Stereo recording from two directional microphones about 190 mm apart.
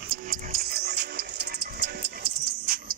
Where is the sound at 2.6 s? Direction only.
50° right (ahead or behind).